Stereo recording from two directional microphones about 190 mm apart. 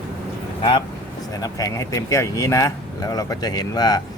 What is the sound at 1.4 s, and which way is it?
Speech, 20° left (ahead or behind).